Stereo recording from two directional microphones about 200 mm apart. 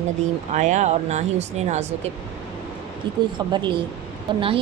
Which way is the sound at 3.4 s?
25° right (ahead or behind).